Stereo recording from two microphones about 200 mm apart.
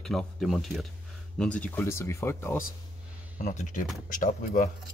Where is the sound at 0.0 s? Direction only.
Centre (ahead or behind).